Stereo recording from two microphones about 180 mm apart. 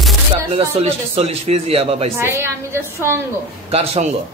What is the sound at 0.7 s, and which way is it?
A man's voice, 35° right (ahead or behind).